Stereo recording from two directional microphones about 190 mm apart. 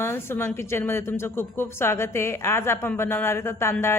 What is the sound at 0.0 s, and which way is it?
A woman's voice, 10° left (ahead or behind).